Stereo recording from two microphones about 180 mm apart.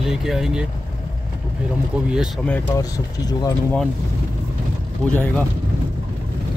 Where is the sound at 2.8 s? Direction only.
20° left (ahead or behind).